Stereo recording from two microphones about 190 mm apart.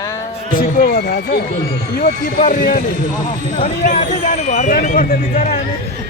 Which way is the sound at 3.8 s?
40° left (ahead or behind).